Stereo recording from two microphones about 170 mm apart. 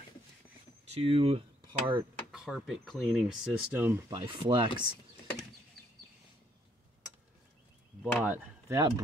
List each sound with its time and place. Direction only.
0.8 s speech: 35° right (ahead or behind)
1.7 s speech: 15° right (ahead or behind)
2.3 s speech: 5° right (ahead or behind)
4.1 s speech: 30° right (ahead or behind)
8.0 s speech: 10° right (ahead or behind)